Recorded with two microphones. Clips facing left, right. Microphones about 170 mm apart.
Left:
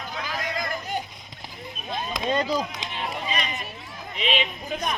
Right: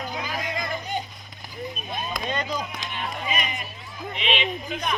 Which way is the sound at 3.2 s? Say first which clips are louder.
Right 3 dB; 15° right (ahead or behind).